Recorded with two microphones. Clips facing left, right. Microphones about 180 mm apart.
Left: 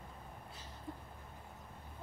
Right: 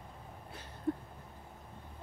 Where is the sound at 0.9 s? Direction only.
55° right (ahead or behind).